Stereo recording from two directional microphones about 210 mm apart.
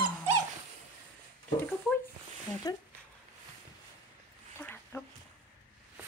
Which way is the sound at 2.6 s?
20° left (ahead or behind).